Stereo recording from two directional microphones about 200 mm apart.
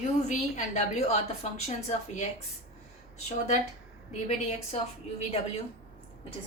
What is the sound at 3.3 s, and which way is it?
Speech, 35° left (ahead or behind).